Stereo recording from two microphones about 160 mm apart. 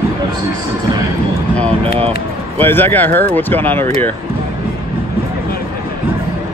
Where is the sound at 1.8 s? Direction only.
40° right (ahead or behind).